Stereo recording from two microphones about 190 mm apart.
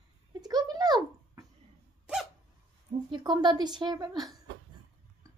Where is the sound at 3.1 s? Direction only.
25° right (ahead or behind).